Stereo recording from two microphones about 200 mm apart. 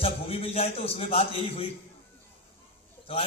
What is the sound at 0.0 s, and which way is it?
A man's voice, 30° left (ahead or behind).